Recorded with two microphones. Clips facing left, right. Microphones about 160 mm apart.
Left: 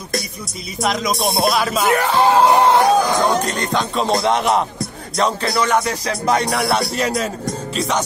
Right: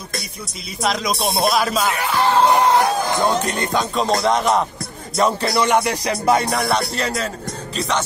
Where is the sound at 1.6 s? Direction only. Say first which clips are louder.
Left 1 dB; centre (ahead or behind).